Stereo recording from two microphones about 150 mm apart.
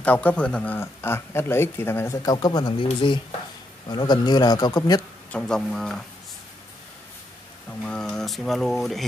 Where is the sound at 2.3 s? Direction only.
30° left (ahead or behind).